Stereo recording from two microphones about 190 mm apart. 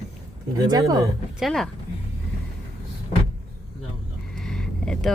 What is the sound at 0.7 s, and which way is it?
Speech, 20° right (ahead or behind).